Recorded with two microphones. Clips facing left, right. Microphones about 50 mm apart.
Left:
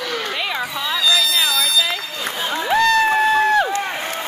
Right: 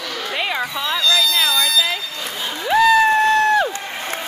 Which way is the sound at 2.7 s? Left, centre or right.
Centre.